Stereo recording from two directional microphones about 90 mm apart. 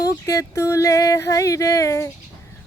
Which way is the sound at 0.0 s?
40° left (ahead or behind).